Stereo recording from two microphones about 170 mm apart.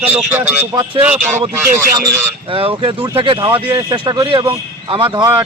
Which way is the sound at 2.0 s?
30° right (ahead or behind).